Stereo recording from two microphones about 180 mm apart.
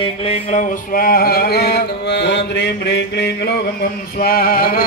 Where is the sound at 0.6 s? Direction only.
45° left (ahead or behind).